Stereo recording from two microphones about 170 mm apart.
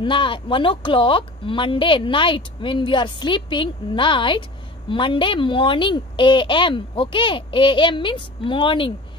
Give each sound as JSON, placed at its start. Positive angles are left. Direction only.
{"t": 0.0, "sound": "a woman's voice", "side_deg": 30}